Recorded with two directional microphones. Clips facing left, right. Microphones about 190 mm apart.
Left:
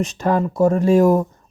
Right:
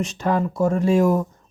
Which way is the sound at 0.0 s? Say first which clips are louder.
Left 3 dB; 40° left (ahead or behind).